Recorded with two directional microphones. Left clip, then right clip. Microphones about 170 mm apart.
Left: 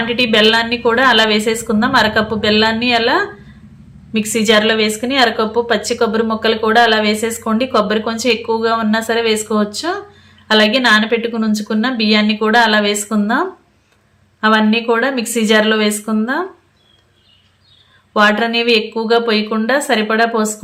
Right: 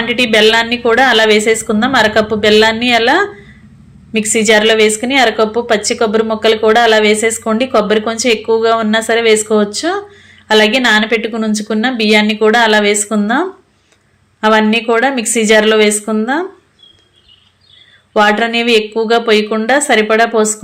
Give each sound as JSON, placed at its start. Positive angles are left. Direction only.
{"t": 0.1, "sound": "a woman's voice", "side_deg": -15}
{"t": 18.1, "sound": "a woman's voice", "side_deg": -15}